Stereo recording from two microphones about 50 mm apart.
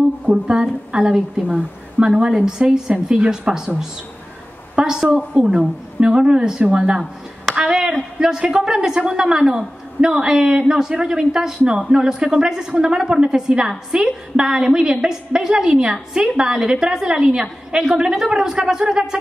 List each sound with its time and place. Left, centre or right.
0.3 s a woman's voice: centre
4.7 s a woman's voice: centre
7.7 s a woman's voice: centre